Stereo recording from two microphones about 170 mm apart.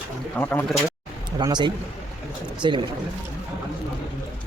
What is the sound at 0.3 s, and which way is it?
Speech, 10° left (ahead or behind).